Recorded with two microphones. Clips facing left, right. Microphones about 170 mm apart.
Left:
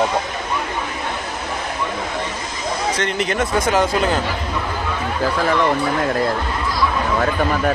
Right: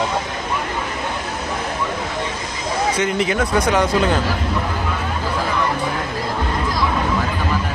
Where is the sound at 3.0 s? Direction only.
5° right (ahead or behind).